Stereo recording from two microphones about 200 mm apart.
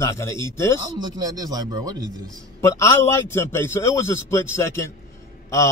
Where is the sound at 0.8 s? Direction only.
20° right (ahead or behind).